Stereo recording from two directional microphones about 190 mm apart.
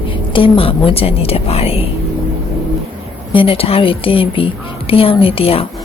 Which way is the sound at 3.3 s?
30° left (ahead or behind).